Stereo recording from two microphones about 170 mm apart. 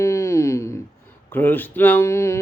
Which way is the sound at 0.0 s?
15° left (ahead or behind).